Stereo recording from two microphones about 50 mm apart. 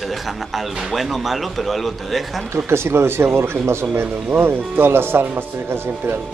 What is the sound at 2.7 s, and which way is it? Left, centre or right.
Speech, right.